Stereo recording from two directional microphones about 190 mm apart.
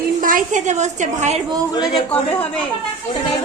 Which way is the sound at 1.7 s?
25° left (ahead or behind).